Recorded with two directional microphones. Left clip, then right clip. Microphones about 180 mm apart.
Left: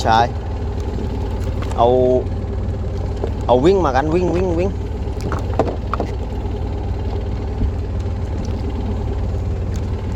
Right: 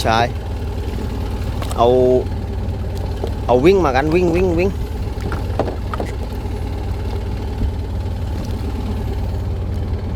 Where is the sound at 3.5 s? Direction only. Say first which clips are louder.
Right 1 dB; 15° right (ahead or behind).